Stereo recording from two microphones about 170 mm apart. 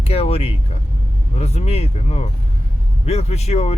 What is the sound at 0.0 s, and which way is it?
Speech, 35° left (ahead or behind).